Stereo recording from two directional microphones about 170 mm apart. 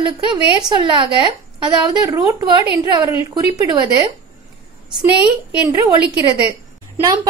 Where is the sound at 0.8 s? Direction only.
30° right (ahead or behind).